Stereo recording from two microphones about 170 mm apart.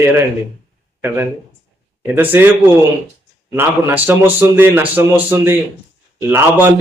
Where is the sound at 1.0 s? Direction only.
15° right (ahead or behind).